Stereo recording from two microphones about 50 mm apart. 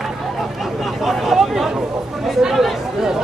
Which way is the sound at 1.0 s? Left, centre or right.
Centre.